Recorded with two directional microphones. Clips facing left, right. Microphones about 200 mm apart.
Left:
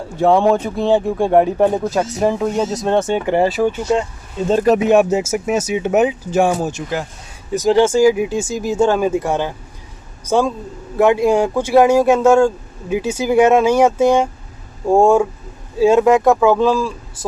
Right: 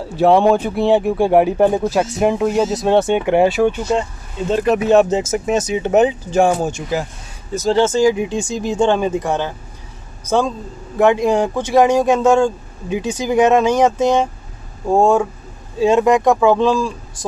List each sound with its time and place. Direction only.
1.1 s speech: 5° right (ahead or behind)
4.5 s speech: 45° left (ahead or behind)
4.7 s speech: 15° left (ahead or behind)
7.5 s speech: 15° left (ahead or behind)